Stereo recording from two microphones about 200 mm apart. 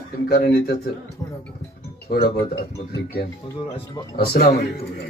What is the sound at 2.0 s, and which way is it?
Speech, 50° left (ahead or behind).